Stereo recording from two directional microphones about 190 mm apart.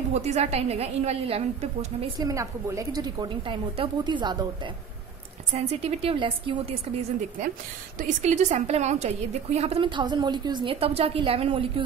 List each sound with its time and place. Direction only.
0.1 s a woman's voice: 35° right (ahead or behind)
2.1 s a woman's voice: 15° right (ahead or behind)
5.5 s a woman's voice: 30° right (ahead or behind)
8.0 s a woman's voice: 40° right (ahead or behind)